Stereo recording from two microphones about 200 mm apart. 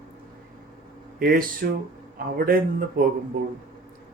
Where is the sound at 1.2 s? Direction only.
50° right (ahead or behind).